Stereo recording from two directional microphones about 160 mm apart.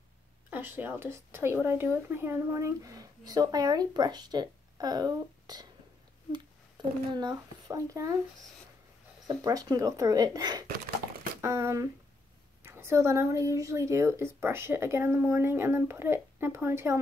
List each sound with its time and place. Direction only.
0.5 s a woman's voice: 10° right (ahead or behind)
7.2 s a woman's voice: 25° right (ahead or behind)
9.3 s a woman's voice: 25° right (ahead or behind)